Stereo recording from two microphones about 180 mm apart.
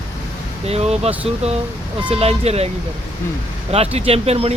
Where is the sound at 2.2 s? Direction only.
35° right (ahead or behind).